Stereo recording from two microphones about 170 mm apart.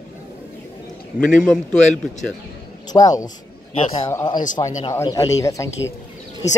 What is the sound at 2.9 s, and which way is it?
Speech, 20° left (ahead or behind).